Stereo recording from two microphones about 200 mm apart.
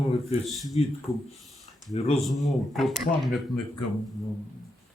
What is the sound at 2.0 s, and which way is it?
Speech, 30° left (ahead or behind).